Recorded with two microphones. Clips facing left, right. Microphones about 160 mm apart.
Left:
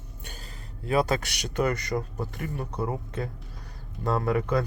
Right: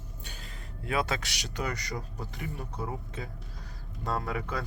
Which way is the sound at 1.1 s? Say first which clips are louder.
Left 6 dB; 55° left (ahead or behind).